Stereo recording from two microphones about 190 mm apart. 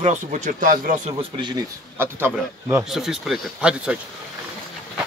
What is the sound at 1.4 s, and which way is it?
Speech, 20° right (ahead or behind).